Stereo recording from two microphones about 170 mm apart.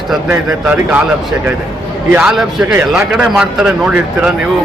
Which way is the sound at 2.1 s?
5° right (ahead or behind).